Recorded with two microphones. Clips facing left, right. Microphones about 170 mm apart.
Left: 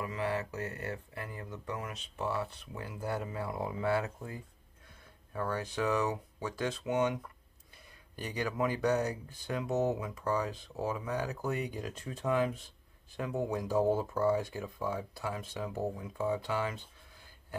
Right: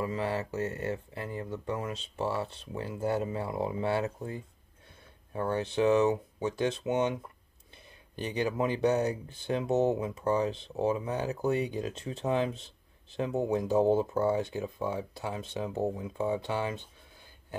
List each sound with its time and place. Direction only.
0.0 s speech: 30° right (ahead or behind)